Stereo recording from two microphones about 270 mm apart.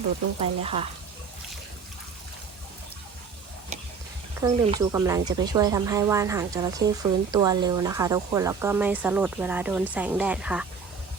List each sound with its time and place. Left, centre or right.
0.3 s speech: right
4.4 s a woman's voice: centre